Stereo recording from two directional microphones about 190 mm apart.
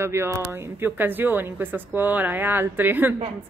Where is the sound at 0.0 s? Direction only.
15° right (ahead or behind).